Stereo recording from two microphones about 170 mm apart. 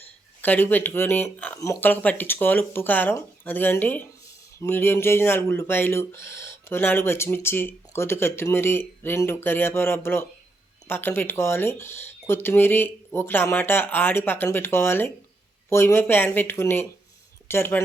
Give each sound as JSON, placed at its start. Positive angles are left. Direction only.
{"t": 0.4, "sound": "speech", "side_deg": 10}